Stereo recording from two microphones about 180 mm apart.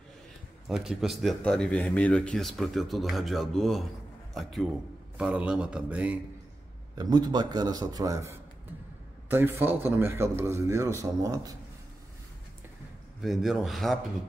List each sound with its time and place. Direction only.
0.7 s a man's voice: centre (ahead or behind)
7.0 s a man's voice: 20° right (ahead or behind)
13.2 s speech: centre (ahead or behind)